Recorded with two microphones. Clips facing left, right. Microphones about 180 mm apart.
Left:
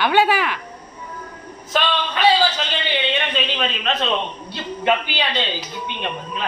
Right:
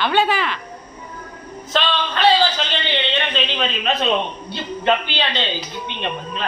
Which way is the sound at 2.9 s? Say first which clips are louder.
Left 1 dB; 10° left (ahead or behind).